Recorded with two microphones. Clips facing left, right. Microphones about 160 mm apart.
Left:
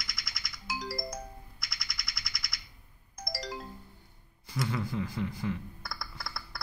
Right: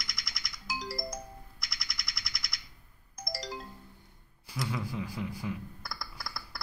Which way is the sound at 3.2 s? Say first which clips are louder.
Left 1 dB; centre (ahead or behind).